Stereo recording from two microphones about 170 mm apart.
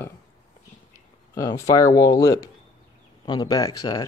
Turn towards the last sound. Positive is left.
turn(degrees=20)  # may be behind; listen again after turning